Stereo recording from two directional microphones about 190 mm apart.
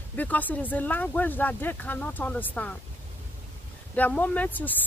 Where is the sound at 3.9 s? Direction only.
5° left (ahead or behind).